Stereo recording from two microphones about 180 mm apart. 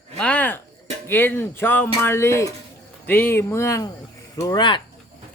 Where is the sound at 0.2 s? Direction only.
5° left (ahead or behind).